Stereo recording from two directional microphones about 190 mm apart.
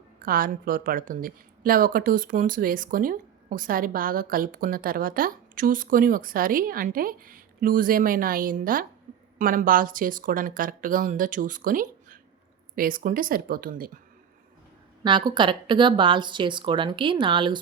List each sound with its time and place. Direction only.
0.2 s a woman's voice: 45° right (ahead or behind)
9.1 s a sound: 40° right (ahead or behind)
9.4 s a woman's voice: 45° right (ahead or behind)
15.0 s speech: 25° right (ahead or behind)